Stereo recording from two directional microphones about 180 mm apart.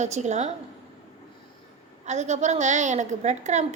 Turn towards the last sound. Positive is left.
turn(degrees=-40)  # may be behind; listen again after turning